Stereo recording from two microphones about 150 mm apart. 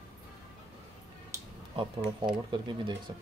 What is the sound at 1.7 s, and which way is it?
Speech, 35° right (ahead or behind).